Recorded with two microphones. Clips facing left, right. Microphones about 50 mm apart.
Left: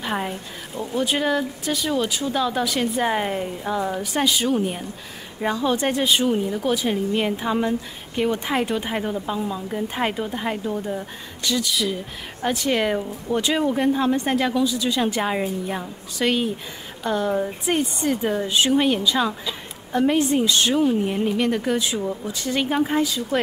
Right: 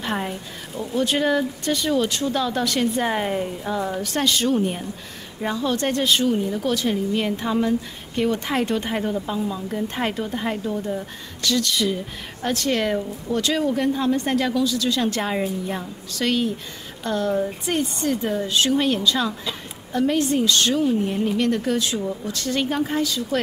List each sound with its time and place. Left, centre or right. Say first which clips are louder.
0.0 s a woman's voice: even; centre
12.4 s a woman's voice: left 1 dB; centre